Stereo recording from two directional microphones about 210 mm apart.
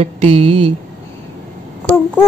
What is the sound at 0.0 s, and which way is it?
Speech, 30° right (ahead or behind).